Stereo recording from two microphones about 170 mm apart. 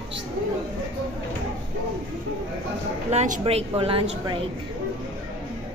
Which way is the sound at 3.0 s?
45° right (ahead or behind).